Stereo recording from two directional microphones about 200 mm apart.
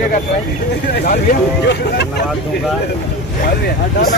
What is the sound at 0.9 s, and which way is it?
Speech, 50° left (ahead or behind).